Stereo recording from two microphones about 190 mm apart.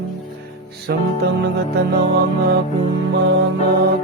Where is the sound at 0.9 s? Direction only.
60° right (ahead or behind).